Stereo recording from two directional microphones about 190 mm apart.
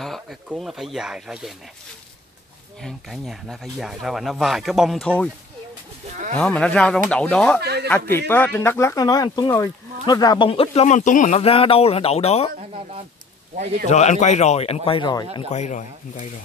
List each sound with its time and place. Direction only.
0.0 s speech: centre (ahead or behind)
2.8 s speech: centre (ahead or behind)
6.3 s speech: 5° left (ahead or behind)
7.6 s speech: 60° right (ahead or behind)
8.3 s speech: 10° left (ahead or behind); by 12.4 s 35° left (ahead or behind)
12.5 s speech: 30° right (ahead or behind)
13.8 s a man's voice: 35° left (ahead or behind)
15.5 s a man's voice: 40° left (ahead or behind)